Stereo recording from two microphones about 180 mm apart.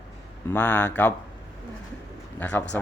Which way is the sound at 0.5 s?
10° left (ahead or behind).